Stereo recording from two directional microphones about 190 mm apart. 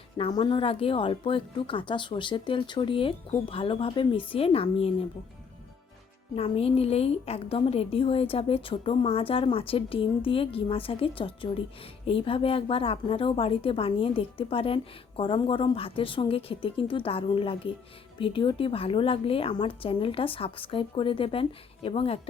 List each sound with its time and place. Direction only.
0.2 s a woman's voice: 25° left (ahead or behind)
6.3 s a woman's voice: 30° left (ahead or behind)